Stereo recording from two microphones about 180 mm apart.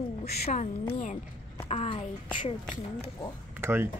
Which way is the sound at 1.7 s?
35° left (ahead or behind).